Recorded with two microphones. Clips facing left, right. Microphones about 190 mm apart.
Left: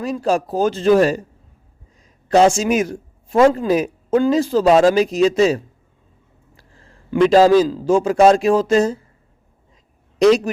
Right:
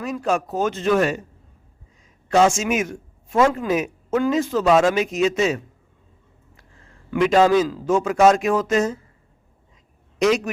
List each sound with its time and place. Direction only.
0.0 s speech: 35° left (ahead or behind)
2.3 s a man's voice: 35° left (ahead or behind)
10.2 s speech: 35° left (ahead or behind)